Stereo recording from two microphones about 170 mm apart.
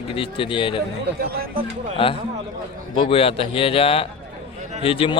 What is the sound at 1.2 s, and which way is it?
Speech, 60° right (ahead or behind).